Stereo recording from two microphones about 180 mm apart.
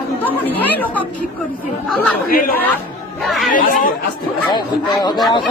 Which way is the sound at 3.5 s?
50° left (ahead or behind).